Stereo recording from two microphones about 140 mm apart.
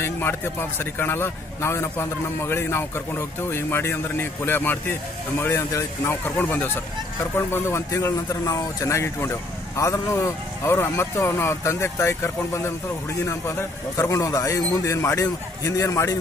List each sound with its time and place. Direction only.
0.0 s a man's voice: 15° left (ahead or behind)